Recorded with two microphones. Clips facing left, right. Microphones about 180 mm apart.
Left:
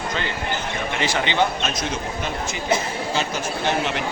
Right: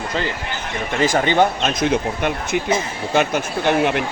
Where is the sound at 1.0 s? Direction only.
45° right (ahead or behind).